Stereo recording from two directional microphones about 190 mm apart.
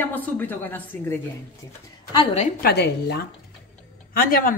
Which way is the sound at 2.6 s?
60° left (ahead or behind).